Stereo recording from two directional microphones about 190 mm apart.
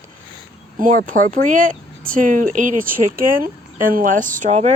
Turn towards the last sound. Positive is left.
turn(degrees=-35)  # may be behind; listen again after turning